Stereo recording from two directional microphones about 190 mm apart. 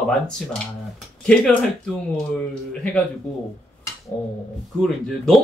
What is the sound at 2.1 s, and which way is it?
Speech, 5° left (ahead or behind).